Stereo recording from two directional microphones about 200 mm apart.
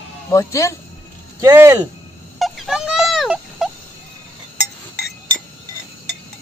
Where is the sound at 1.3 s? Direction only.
15° right (ahead or behind).